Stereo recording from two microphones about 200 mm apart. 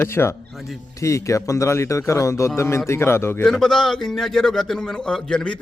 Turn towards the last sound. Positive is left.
turn(degrees=5)  # may be behind; listen again after turning